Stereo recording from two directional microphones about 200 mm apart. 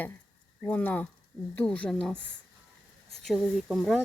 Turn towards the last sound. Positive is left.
turn(degrees=0)  # may be behind; listen again after turning